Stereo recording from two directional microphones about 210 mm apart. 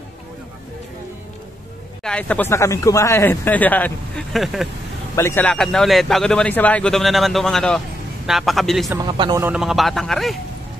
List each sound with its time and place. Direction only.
2.0 s speech: 5° left (ahead or behind)
5.1 s a man's voice: 15° left (ahead or behind)
8.9 s a man's voice: 20° right (ahead or behind)
9.4 s a man's voice: 5° right (ahead or behind)